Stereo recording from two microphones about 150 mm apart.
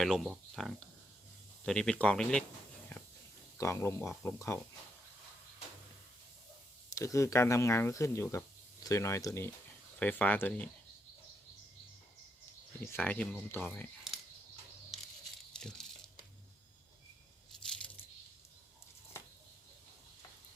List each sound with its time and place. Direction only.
0.0 s speech: centre (ahead or behind)
3.6 s speech: 20° left (ahead or behind)
6.9 s speech: 20° left (ahead or behind)
12.8 s speech: 15° left (ahead or behind)
15.6 s crumpling: 5° left (ahead or behind)